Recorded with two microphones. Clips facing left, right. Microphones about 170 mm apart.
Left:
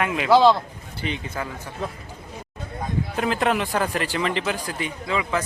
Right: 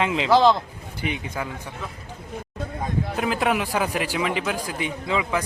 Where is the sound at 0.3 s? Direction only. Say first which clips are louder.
Left 2 dB; 5° left (ahead or behind).